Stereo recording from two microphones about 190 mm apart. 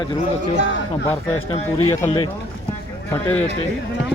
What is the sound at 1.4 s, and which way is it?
Speech, 30° left (ahead or behind).